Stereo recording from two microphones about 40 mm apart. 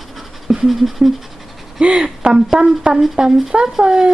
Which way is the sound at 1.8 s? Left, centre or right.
Right.